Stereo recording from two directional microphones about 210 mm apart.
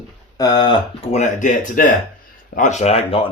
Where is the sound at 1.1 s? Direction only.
35° left (ahead or behind).